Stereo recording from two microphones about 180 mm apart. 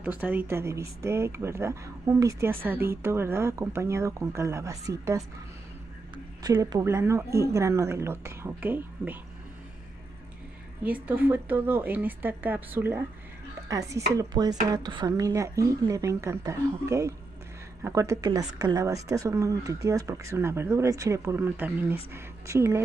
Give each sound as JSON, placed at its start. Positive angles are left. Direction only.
{"t": 0.0, "sound": "speech", "side_deg": -10}
{"t": 10.8, "sound": "speech", "side_deg": -10}
{"t": 14.1, "sound": "chopping", "side_deg": -20}
{"t": 14.7, "sound": "speech", "side_deg": -25}